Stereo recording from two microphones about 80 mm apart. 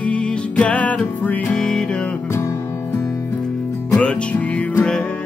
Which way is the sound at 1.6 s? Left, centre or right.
Centre.